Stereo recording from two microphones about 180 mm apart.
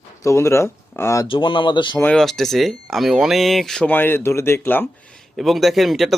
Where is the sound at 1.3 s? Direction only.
25° left (ahead or behind).